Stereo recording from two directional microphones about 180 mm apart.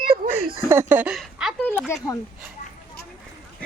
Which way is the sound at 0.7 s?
15° right (ahead or behind).